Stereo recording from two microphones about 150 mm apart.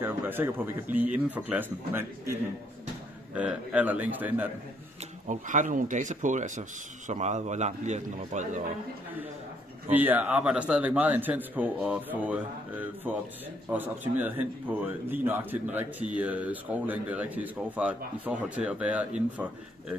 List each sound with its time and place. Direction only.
0.0 s speech: 15° right (ahead or behind)
3.3 s speech: 10° right (ahead or behind)
5.2 s a man's voice: 55° right (ahead or behind)
9.8 s speech: 10° right (ahead or behind)